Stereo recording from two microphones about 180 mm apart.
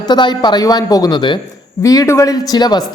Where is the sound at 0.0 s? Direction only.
25° left (ahead or behind).